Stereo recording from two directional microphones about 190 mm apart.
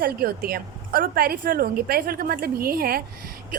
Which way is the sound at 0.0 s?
50° right (ahead or behind).